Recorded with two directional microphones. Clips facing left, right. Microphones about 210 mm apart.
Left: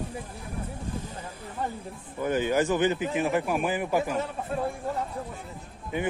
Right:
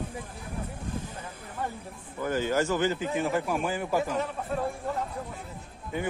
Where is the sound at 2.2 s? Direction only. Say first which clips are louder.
Left 2 dB; 15° left (ahead or behind).